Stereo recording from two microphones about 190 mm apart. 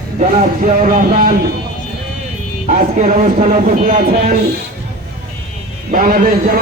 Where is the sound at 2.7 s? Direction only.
40° right (ahead or behind).